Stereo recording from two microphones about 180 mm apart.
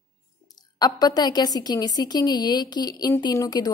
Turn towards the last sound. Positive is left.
turn(degrees=20)  # may be behind; listen again after turning